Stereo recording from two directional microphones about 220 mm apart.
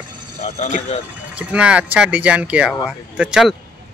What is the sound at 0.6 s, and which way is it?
Speech, 30° left (ahead or behind).